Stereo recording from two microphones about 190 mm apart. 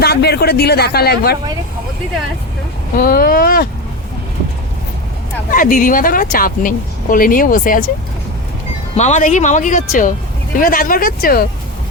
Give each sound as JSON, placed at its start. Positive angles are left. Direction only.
{"t": 0.0, "sound": "speech", "side_deg": 55}
{"t": 3.0, "sound": "speech", "side_deg": 50}
{"t": 5.5, "sound": "speech", "side_deg": 45}
{"t": 9.0, "sound": "speech", "side_deg": 40}